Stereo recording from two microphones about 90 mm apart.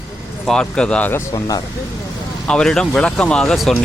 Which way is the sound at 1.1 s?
40° left (ahead or behind).